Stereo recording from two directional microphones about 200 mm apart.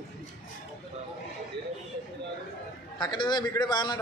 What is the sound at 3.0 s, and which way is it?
A man's voice, 20° left (ahead or behind).